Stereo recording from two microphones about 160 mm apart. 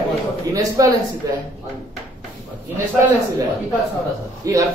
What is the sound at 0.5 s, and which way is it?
Speech, 20° right (ahead or behind).